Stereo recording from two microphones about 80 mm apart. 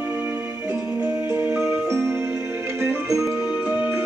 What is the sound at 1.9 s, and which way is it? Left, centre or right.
Music, right.